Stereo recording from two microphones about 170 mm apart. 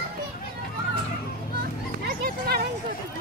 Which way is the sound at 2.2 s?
60° right (ahead or behind).